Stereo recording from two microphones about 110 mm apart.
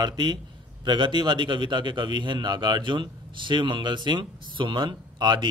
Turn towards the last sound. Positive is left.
turn(degrees=-45)  # may be behind; listen again after turning